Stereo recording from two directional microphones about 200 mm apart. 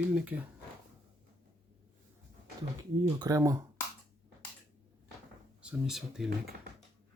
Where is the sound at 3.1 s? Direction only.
20° right (ahead or behind).